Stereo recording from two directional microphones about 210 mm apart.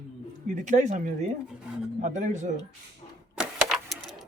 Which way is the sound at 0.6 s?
35° right (ahead or behind).